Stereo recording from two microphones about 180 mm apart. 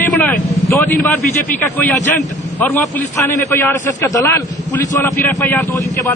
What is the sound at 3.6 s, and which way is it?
A man's voice, 15° left (ahead or behind).